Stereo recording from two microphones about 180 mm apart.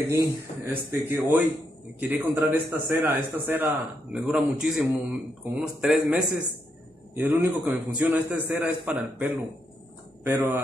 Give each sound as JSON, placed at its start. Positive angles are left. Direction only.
{"t": 0.0, "sound": "a man's voice", "side_deg": -15}